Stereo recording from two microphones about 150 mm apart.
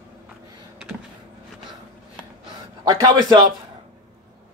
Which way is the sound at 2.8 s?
25° right (ahead or behind).